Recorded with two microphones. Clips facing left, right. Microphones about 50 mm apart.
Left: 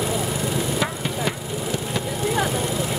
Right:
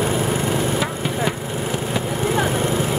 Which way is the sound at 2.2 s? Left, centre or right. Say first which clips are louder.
Right 2 dB; right.